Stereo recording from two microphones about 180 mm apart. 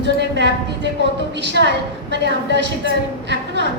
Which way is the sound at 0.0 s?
75° right (ahead or behind).